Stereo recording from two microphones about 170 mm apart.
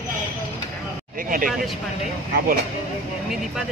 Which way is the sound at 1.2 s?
55° right (ahead or behind).